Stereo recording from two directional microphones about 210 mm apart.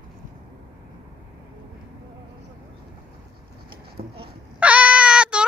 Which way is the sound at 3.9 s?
50° right (ahead or behind).